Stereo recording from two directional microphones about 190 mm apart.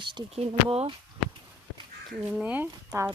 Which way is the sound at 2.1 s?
5° right (ahead or behind).